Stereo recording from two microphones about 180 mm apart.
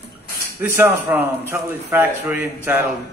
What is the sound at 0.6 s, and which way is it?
A man's voice, 15° right (ahead or behind).